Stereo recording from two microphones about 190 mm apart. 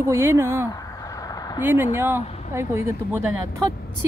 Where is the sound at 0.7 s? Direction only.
20° left (ahead or behind).